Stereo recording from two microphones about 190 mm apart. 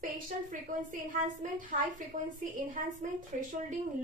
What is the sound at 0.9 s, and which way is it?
A woman's voice, 45° right (ahead or behind).